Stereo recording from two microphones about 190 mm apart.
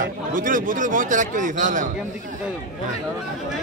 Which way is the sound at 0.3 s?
45° right (ahead or behind).